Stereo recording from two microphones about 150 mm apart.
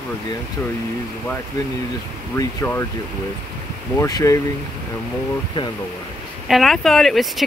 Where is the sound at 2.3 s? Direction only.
15° left (ahead or behind).